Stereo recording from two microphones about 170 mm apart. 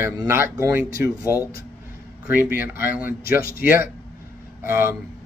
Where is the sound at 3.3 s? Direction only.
60° left (ahead or behind).